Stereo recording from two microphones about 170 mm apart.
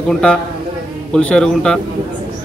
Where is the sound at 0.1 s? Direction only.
5° left (ahead or behind).